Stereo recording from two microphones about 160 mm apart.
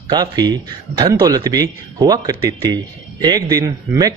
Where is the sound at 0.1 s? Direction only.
25° right (ahead or behind).